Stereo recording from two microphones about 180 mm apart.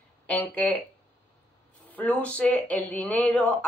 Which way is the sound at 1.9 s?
10° left (ahead or behind).